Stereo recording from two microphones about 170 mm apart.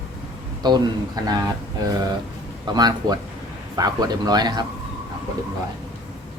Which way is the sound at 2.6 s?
25° right (ahead or behind).